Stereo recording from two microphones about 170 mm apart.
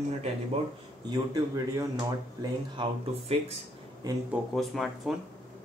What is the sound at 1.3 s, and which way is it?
Speech, 20° right (ahead or behind).